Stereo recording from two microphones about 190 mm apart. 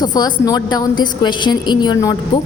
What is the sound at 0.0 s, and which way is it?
A woman's voice, 20° left (ahead or behind).